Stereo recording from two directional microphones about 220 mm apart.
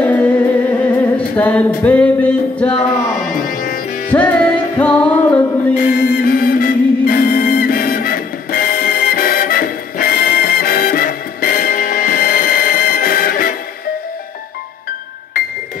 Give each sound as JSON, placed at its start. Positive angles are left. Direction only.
{"t": 0.0, "sound": "music", "side_deg": 5}
{"t": 3.3, "sound": "music", "side_deg": 40}
{"t": 4.1, "sound": "music", "side_deg": 5}
{"t": 5.8, "sound": "music", "side_deg": 40}